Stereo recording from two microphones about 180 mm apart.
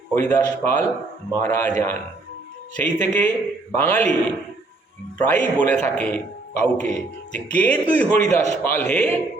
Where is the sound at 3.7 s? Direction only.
10° left (ahead or behind).